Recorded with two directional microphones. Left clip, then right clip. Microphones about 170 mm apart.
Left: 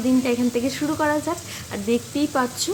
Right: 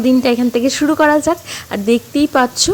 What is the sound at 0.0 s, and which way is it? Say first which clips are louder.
Speech: right 8 dB; 50° right (ahead or behind).